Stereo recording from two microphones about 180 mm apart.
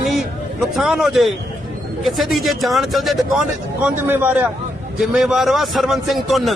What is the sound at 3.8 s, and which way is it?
A man's voice, 10° right (ahead or behind).